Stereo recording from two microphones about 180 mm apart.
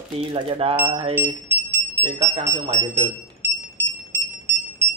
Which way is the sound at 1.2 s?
15° right (ahead or behind).